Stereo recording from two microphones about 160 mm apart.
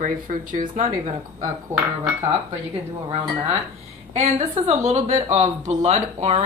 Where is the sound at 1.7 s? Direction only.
10° right (ahead or behind).